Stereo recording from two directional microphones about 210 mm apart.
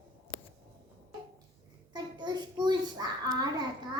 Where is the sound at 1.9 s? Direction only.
20° right (ahead or behind).